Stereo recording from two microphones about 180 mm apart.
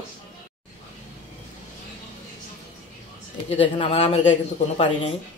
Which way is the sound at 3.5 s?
30° left (ahead or behind).